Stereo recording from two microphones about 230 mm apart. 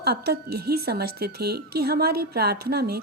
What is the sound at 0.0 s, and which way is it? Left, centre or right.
Speech, right.